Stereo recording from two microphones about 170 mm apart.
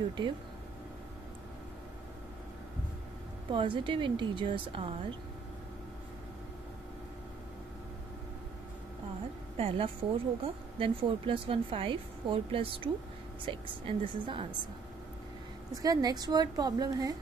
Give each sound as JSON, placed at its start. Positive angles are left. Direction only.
{"t": 3.5, "sound": "a woman's voice", "side_deg": -30}
{"t": 9.6, "sound": "speech", "side_deg": -35}
{"t": 15.7, "sound": "a woman's voice", "side_deg": -20}